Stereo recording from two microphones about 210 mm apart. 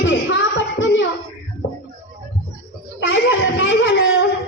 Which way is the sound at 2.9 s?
60° left (ahead or behind).